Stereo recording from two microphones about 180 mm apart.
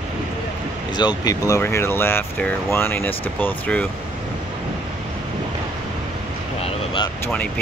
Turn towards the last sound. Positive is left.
turn(degrees=10)  # may be behind; listen again after turning